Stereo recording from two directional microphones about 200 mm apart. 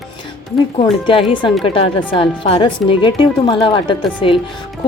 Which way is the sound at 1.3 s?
25° left (ahead or behind).